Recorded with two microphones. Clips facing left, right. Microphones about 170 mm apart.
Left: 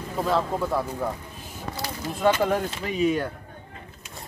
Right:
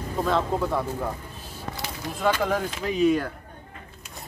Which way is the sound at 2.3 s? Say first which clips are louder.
Left 2 dB; 5° left (ahead or behind).